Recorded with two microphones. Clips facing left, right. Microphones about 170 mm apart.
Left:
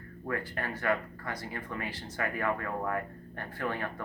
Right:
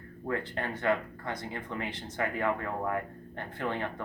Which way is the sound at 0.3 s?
25° right (ahead or behind).